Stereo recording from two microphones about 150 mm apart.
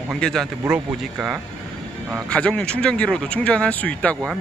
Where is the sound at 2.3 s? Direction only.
5° left (ahead or behind).